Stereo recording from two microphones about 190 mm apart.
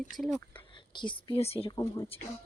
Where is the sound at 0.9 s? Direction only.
25° left (ahead or behind).